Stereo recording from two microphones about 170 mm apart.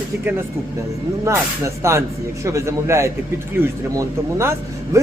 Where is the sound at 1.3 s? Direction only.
15° right (ahead or behind).